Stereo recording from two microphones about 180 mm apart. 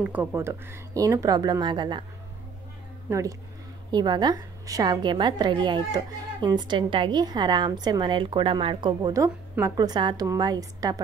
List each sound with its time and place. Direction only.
0.0 s a woman's voice: 5° right (ahead or behind); by 2.0 s 25° right (ahead or behind)
3.1 s a woman's voice: 15° right (ahead or behind)